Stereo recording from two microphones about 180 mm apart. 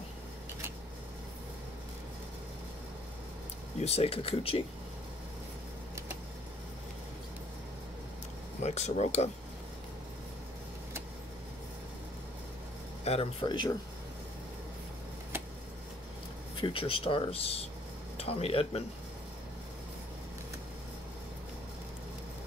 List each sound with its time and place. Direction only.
3.8 s speech: 35° left (ahead or behind)
8.6 s speech: 40° left (ahead or behind)
13.0 s speech: 35° left (ahead or behind)
16.6 s speech: 30° left (ahead or behind)